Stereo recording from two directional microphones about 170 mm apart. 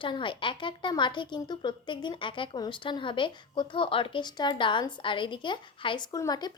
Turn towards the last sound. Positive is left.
turn(degrees=25)  # may be behind; listen again after turning